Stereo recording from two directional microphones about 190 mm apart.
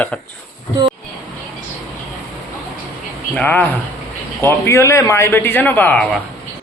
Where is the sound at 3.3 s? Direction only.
10° left (ahead or behind).